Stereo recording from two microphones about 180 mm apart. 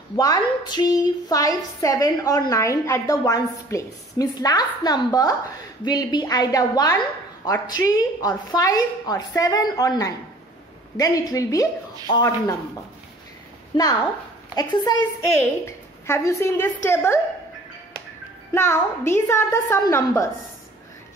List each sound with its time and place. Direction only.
0.1 s a woman's voice: 20° left (ahead or behind)
13.7 s a woman's voice: 25° left (ahead or behind)
18.5 s a woman's voice: 15° left (ahead or behind)